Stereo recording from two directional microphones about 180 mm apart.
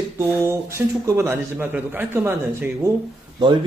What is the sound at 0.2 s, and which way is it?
A man's voice, 15° right (ahead or behind).